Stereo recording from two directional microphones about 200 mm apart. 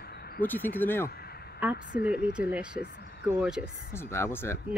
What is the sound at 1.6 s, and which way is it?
A woman's voice, 5° right (ahead or behind).